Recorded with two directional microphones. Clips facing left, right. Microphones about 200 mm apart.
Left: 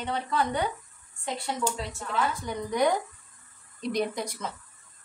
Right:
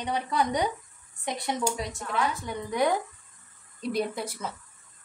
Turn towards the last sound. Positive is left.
turn(degrees=-5)  # may be behind; listen again after turning